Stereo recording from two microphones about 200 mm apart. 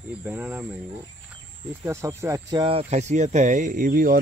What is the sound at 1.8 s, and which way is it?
Speech, 15° right (ahead or behind).